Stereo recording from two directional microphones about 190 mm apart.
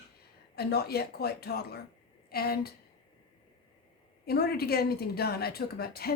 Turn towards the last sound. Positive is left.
turn(degrees=55)  # may be behind; listen again after turning